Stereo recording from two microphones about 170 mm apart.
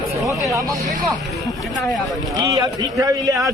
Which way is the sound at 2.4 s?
20° right (ahead or behind).